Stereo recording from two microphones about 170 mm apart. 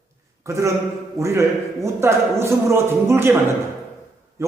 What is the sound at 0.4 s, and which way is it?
A man's voice, 15° right (ahead or behind).